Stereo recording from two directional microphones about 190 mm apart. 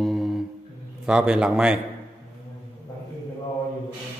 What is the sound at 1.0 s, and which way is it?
Speech, 5° right (ahead or behind).